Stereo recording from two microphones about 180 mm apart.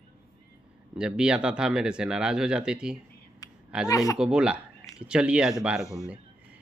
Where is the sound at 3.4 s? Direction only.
20° left (ahead or behind).